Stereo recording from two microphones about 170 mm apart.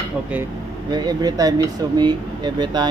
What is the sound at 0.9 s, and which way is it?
Speech, 25° right (ahead or behind).